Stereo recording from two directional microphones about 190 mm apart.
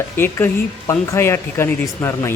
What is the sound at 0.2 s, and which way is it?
Speech, 10° left (ahead or behind).